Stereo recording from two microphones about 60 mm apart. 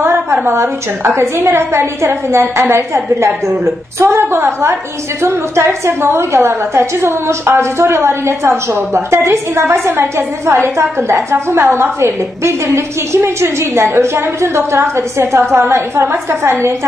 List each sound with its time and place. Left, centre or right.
0.0 s a woman's voice: right